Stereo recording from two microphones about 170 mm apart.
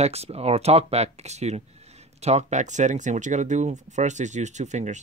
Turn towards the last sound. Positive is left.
turn(degrees=-45)  # may be behind; listen again after turning